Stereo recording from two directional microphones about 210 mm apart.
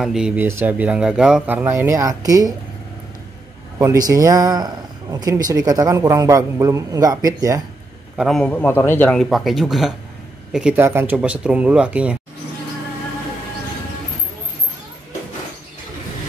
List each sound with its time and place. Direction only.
0.0 s speech: 5° right (ahead or behind)
3.7 s speech: 15° right (ahead or behind)
8.2 s a man's voice: centre (ahead or behind)